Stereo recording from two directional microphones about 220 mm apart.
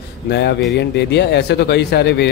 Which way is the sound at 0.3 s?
50° left (ahead or behind).